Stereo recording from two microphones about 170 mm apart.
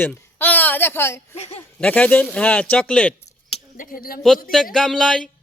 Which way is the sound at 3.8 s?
55° left (ahead or behind).